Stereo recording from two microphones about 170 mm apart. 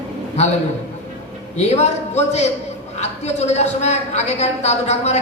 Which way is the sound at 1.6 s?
40° left (ahead or behind).